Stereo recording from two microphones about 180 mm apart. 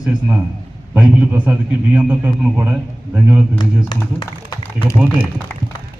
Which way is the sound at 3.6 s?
25° left (ahead or behind).